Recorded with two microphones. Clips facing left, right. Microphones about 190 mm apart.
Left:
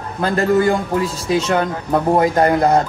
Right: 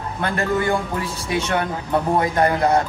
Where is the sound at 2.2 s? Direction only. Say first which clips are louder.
Left 4 dB; 30° left (ahead or behind).